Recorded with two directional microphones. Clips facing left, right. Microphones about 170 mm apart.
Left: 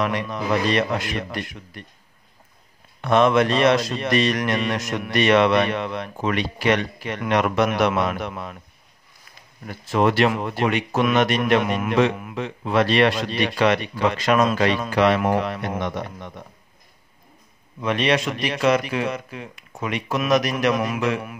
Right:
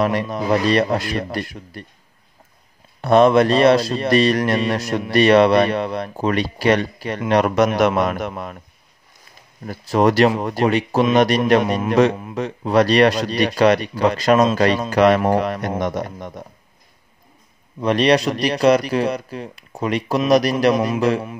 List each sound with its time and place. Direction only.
0.0 s speech: 35° right (ahead or behind)
3.0 s speech: 35° right (ahead or behind)
9.7 s speech: 40° right (ahead or behind)
17.8 s speech: 35° right (ahead or behind)